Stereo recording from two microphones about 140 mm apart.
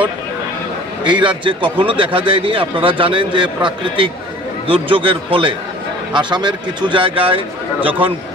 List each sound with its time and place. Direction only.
1.0 s a man's voice: 35° right (ahead or behind)